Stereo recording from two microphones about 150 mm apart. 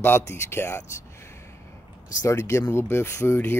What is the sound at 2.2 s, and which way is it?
Speech, 20° left (ahead or behind).